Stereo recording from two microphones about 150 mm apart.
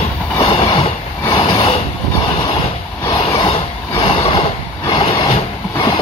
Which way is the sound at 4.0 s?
40° left (ahead or behind).